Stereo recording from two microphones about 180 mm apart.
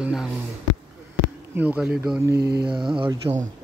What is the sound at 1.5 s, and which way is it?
Speech, 10° right (ahead or behind).